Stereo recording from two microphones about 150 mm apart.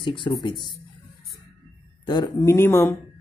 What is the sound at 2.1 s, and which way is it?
Speech, 30° left (ahead or behind).